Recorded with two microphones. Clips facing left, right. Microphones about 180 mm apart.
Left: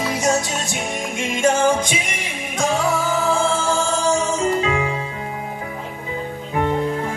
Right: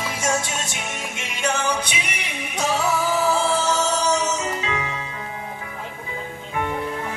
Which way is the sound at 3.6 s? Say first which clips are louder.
Left 2 dB; 45° left (ahead or behind).